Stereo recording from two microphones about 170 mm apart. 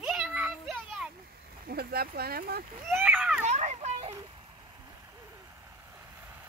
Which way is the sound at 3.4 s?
40° right (ahead or behind).